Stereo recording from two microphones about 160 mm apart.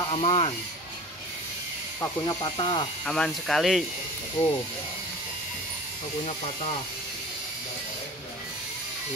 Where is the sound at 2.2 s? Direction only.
30° left (ahead or behind).